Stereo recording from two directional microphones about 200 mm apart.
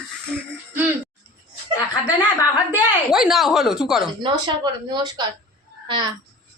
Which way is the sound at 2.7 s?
Centre (ahead or behind).